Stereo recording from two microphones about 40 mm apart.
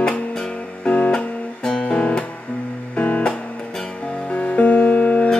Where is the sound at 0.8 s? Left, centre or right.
Left.